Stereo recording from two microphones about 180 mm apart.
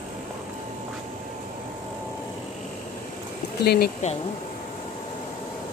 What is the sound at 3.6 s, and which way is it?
Speech, 60° left (ahead or behind).